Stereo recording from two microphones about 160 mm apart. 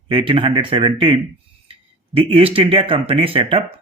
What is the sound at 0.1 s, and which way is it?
Speech, 35° right (ahead or behind).